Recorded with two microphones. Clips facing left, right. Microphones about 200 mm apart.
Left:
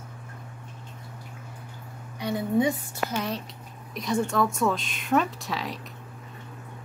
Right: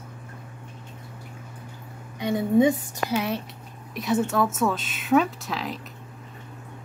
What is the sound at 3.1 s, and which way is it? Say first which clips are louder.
Speech: right 4 dB; 5° right (ahead or behind).